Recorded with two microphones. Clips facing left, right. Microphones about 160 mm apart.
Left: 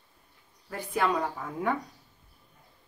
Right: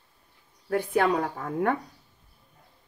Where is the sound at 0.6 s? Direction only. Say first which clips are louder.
Right 5 dB; 60° right (ahead or behind).